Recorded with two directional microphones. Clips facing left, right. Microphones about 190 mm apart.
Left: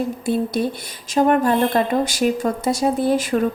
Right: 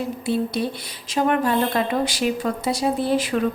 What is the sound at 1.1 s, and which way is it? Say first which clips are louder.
A woman's voice: left 4 dB; 45° left (ahead or behind).